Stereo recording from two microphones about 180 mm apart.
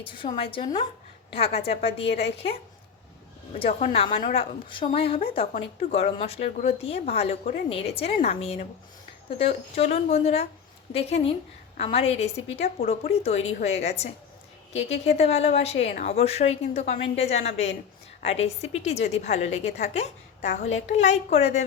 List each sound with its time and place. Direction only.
0.0 s a woman's voice: 30° left (ahead or behind)
3.5 s a woman's voice: 35° left (ahead or behind)